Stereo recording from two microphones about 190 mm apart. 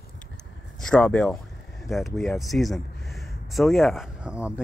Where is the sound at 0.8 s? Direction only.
5° left (ahead or behind).